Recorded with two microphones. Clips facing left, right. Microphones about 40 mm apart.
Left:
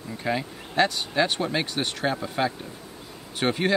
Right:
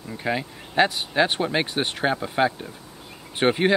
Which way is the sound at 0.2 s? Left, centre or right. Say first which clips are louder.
Right 1 dB; centre.